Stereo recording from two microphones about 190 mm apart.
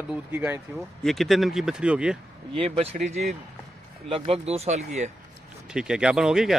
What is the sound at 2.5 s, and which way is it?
Speech, 30° right (ahead or behind).